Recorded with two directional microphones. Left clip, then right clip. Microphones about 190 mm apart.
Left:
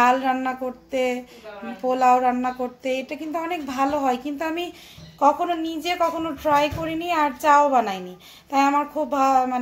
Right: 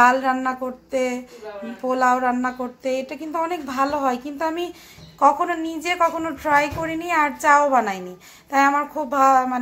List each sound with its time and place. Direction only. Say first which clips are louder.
0.0 s a woman's voice: right 2 dB; 5° left (ahead or behind)